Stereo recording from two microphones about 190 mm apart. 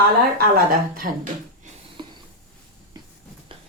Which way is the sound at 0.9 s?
45° right (ahead or behind).